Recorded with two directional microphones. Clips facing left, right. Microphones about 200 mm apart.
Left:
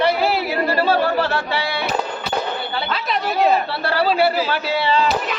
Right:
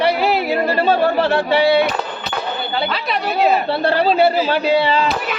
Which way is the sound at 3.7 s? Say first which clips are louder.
Right 4 dB; 20° right (ahead or behind).